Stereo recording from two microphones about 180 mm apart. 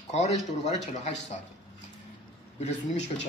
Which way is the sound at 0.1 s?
40° left (ahead or behind).